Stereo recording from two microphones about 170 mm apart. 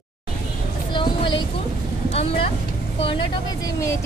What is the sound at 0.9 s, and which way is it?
Vehicle, 30° left (ahead or behind).